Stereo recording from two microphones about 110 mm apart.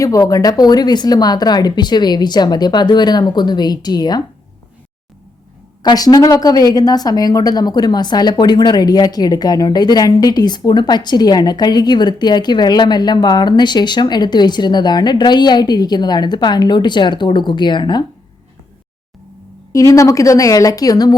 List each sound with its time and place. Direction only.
0.0 s a woman's voice: 30° left (ahead or behind)
5.8 s a woman's voice: 35° left (ahead or behind)
19.7 s a woman's voice: 30° left (ahead or behind)